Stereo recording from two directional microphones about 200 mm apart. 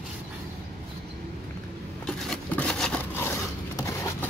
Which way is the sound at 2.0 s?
5° left (ahead or behind).